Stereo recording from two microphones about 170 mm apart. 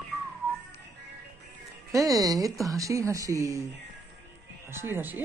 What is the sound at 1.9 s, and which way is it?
Speech, 20° right (ahead or behind).